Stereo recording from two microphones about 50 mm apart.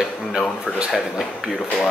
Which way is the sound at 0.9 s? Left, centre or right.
Centre.